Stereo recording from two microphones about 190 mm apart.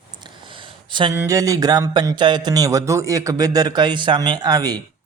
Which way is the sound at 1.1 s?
15° right (ahead or behind).